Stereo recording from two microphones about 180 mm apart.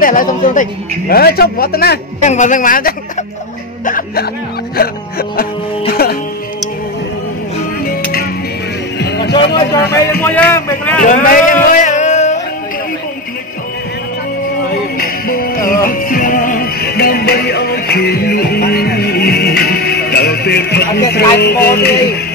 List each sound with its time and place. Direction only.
0.0 s a man's voice: 50° left (ahead or behind)
2.2 s a man's voice: 45° left (ahead or behind)
5.3 s music: 55° left (ahead or behind)
9.0 s music: 70° left (ahead or behind)
9.6 s speech: 15° left (ahead or behind)
11.2 s a sound: 50° left (ahead or behind)
15.0 s music: 55° left (ahead or behind)
21.4 s a man's voice: 65° left (ahead or behind)